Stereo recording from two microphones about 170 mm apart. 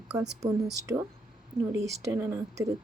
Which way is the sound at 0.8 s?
20° right (ahead or behind).